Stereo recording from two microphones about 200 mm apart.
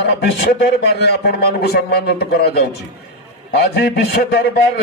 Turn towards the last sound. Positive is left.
turn(degrees=55)  # may be behind; listen again after turning